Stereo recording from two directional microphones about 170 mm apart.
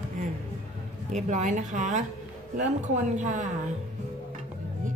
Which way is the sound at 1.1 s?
45° right (ahead or behind).